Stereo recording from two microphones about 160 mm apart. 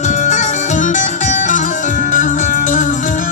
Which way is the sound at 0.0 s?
50° left (ahead or behind).